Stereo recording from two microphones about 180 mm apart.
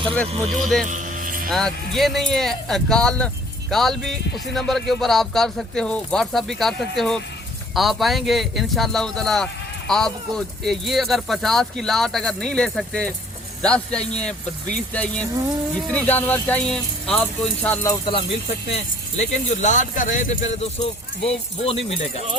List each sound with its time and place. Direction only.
0.6 s speech: centre (ahead or behind)
0.9 s a sound: 45° right (ahead or behind)
1.5 s speech: centre (ahead or behind)
15.9 s speech: 10° left (ahead or behind)
18.0 s speech: 30° left (ahead or behind)